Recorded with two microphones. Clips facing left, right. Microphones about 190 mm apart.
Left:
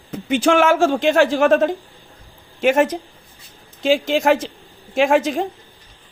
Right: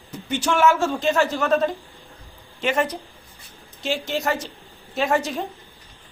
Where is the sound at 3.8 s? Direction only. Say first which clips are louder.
Left 8 dB; 90° left.